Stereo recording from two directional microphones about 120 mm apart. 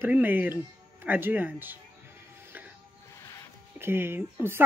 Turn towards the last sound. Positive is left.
turn(degrees=-15)  # may be behind; listen again after turning